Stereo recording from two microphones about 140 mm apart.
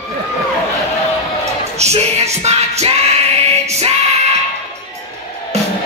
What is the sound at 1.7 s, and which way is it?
Music, 50° right (ahead or behind).